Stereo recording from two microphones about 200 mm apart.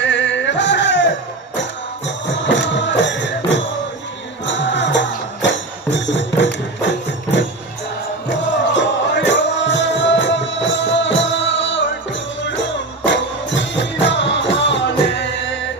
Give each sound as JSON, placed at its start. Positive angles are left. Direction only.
{"t": 0.0, "sound": "music", "side_deg": 65}
{"t": 2.0, "sound": "music", "side_deg": 65}
{"t": 8.3, "sound": "music", "side_deg": 65}
{"t": 13.1, "sound": "music", "side_deg": 65}